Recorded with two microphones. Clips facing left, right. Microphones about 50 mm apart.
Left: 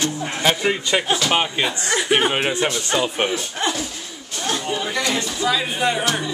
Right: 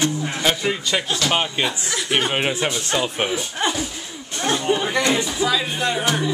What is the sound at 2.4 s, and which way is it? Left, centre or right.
Speech, centre.